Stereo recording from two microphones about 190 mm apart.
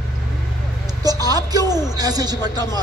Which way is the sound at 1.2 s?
20° right (ahead or behind).